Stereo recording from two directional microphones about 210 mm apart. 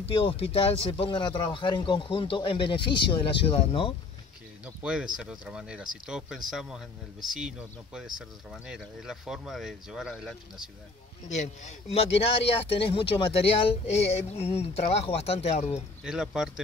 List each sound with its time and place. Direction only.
0.0 s speech: 25° left (ahead or behind)
4.6 s speech: 5° right (ahead or behind)
11.2 s speech: 35° left (ahead or behind)
16.0 s speech: 5° right (ahead or behind)